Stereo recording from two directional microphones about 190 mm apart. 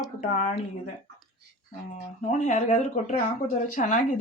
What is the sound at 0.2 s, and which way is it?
Speech, 40° left (ahead or behind).